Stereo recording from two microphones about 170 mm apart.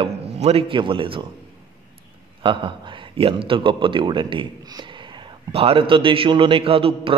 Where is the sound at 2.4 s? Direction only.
30° right (ahead or behind).